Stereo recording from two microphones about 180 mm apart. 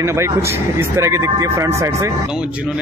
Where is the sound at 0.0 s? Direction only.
15° right (ahead or behind).